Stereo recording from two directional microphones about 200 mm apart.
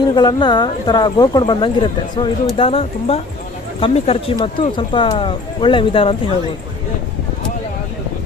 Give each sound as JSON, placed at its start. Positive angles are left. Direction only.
{"t": 0.1, "sound": "speech", "side_deg": 20}